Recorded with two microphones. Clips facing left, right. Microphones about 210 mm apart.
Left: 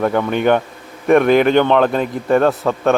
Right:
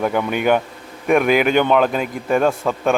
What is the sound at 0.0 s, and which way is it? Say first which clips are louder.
Speech: left 3 dB; 10° right (ahead or behind).